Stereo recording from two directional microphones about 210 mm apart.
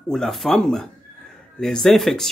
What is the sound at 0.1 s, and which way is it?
Speech, centre (ahead or behind).